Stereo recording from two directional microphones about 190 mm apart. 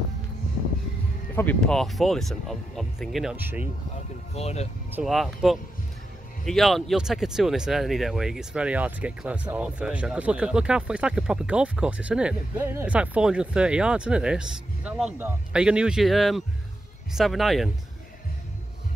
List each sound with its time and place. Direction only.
1.3 s speech: 10° left (ahead or behind); by 3.6 s 10° right (ahead or behind)
4.4 s speech: 35° left (ahead or behind)
4.9 s speech: centre (ahead or behind)